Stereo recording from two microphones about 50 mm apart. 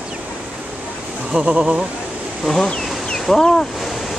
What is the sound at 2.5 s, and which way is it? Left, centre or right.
Speech, centre.